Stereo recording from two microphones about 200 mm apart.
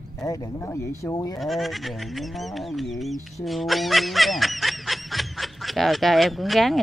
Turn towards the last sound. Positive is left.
turn(degrees=0)  # may be behind; listen again after turning